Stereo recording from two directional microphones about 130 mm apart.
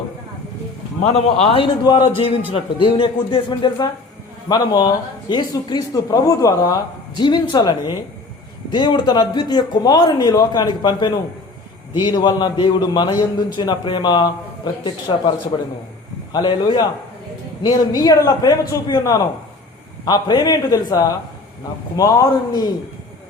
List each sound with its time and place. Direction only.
1.0 s a man's voice: 50° left (ahead or behind)
16.3 s a man's voice: 35° left (ahead or behind)